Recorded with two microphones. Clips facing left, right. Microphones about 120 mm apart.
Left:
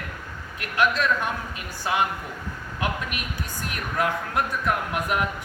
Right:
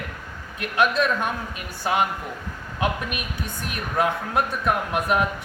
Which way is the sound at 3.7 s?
20° right (ahead or behind).